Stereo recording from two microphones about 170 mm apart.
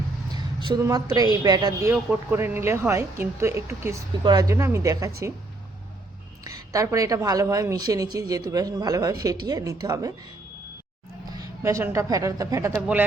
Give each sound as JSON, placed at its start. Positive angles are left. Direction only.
{"t": 0.3, "sound": "a woman's voice", "side_deg": -25}
{"t": 1.9, "sound": "a woman's voice", "side_deg": -15}
{"t": 6.4, "sound": "a woman's voice", "side_deg": -20}
{"t": 11.3, "sound": "a woman's voice", "side_deg": -20}